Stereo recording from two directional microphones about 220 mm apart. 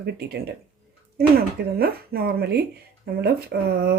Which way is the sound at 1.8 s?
45° right (ahead or behind).